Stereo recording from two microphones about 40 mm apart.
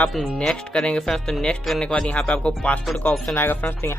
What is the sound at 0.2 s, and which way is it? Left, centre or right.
Speech, centre.